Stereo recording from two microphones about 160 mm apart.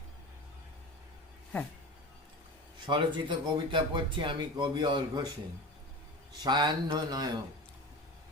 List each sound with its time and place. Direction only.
2.8 s speech: 30° right (ahead or behind)
6.4 s speech: 30° right (ahead or behind)